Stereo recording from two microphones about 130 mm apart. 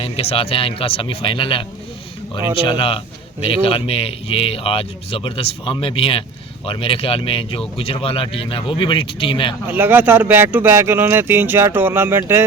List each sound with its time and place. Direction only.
0.0 s a man's voice: 50° left (ahead or behind)
9.6 s speech: 15° right (ahead or behind)